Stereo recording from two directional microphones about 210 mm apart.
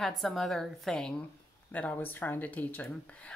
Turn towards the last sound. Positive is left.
turn(degrees=5)  # may be behind; listen again after turning